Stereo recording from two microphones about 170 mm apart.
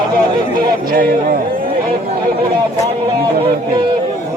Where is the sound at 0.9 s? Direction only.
55° right (ahead or behind).